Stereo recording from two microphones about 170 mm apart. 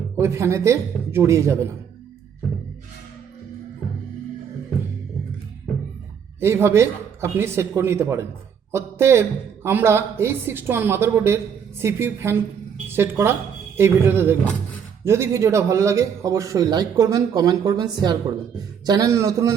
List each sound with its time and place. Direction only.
0.2 s speech: 15° right (ahead or behind)
6.4 s a man's voice: 15° right (ahead or behind)